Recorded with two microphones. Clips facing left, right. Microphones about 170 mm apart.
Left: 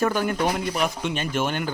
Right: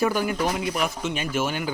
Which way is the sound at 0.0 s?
10° right (ahead or behind).